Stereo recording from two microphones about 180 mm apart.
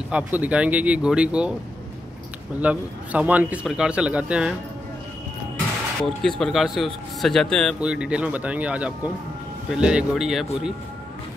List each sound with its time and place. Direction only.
0.1 s a man's voice: 10° right (ahead or behind)
2.6 s a man's voice: 10° right (ahead or behind)
6.0 s speech: centre (ahead or behind)